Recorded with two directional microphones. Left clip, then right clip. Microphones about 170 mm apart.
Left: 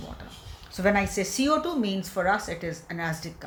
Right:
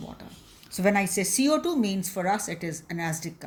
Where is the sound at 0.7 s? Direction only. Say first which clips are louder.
Even; 50° right (ahead or behind).